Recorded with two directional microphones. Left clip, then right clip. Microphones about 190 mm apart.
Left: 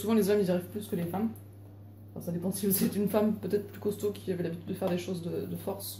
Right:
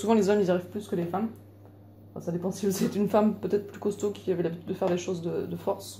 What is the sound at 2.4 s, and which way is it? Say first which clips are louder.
Speech: right 2 dB; 30° right (ahead or behind).